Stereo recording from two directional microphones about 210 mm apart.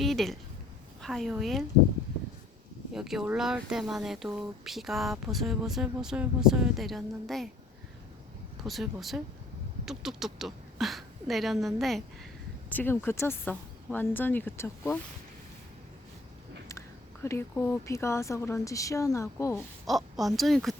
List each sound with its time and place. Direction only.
0.0 s speech: centre (ahead or behind)
2.9 s speech: centre (ahead or behind)
8.6 s speech: centre (ahead or behind)
17.2 s speech: 10° left (ahead or behind)
19.9 s speech: centre (ahead or behind)